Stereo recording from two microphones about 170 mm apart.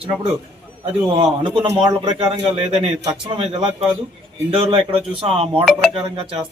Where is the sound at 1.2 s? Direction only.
30° right (ahead or behind).